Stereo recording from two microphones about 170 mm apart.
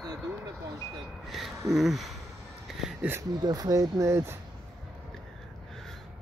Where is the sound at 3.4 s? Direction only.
20° right (ahead or behind).